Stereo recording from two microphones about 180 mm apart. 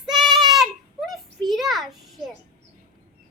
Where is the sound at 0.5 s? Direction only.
Centre (ahead or behind).